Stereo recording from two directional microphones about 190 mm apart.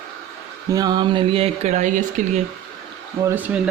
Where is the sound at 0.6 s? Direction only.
20° right (ahead or behind); by 2.0 s 40° right (ahead or behind).